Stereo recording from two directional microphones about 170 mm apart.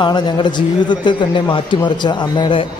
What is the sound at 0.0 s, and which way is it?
A woman's voice, 25° left (ahead or behind).